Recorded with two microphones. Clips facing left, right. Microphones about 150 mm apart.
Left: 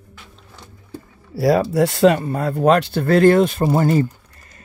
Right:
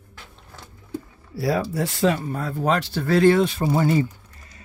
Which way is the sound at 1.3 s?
80° left.